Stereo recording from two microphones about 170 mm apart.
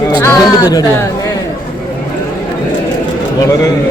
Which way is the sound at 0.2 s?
20° left (ahead or behind).